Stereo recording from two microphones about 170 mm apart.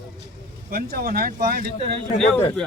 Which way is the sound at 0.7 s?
60° right (ahead or behind).